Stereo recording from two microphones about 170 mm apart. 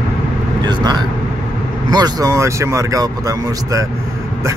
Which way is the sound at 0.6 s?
25° right (ahead or behind).